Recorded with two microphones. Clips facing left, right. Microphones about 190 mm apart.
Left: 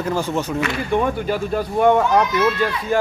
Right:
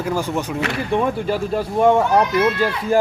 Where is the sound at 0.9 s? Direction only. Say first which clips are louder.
Right 1 dB; centre (ahead or behind).